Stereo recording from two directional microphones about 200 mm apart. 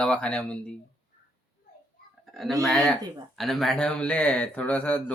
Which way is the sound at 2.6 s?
Centre (ahead or behind).